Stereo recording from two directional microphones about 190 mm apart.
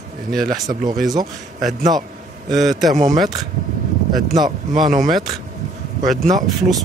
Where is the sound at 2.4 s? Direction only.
Centre (ahead or behind).